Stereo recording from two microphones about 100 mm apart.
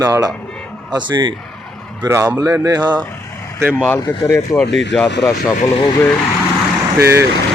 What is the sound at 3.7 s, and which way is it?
Speech, 20° left (ahead or behind).